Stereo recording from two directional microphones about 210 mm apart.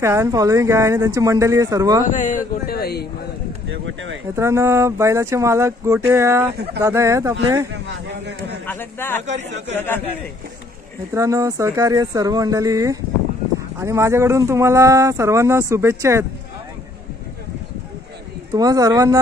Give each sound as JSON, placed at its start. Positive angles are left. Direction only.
{"t": 0.0, "sound": "speech", "side_deg": -15}
{"t": 2.0, "sound": "speech", "side_deg": 40}
{"t": 3.7, "sound": "speech", "side_deg": -65}
{"t": 4.4, "sound": "speech", "side_deg": -15}
{"t": 8.1, "sound": "a man's voice", "side_deg": -55}
{"t": 8.6, "sound": "speech", "side_deg": 10}
{"t": 9.2, "sound": "a man's voice", "side_deg": -35}
{"t": 9.8, "sound": "speech", "side_deg": 10}
{"t": 11.1, "sound": "speech", "side_deg": -15}
{"t": 18.5, "sound": "speech", "side_deg": -15}